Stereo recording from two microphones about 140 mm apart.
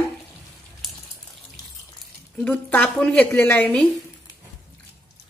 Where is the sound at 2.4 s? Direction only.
10° left (ahead or behind).